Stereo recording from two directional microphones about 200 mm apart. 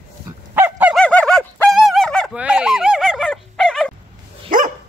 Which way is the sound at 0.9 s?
5° left (ahead or behind).